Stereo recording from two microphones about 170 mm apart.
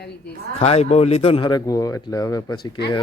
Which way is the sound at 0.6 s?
40° left (ahead or behind).